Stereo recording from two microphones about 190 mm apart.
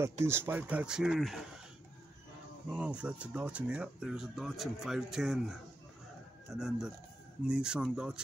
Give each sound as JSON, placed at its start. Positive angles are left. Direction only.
{"t": 0.0, "sound": "speech", "side_deg": -15}
{"t": 2.7, "sound": "speech", "side_deg": -5}